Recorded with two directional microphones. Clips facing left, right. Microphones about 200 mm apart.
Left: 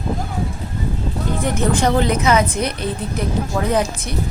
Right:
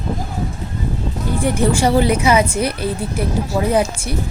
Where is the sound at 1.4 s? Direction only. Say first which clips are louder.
Right 2 dB; 10° right (ahead or behind).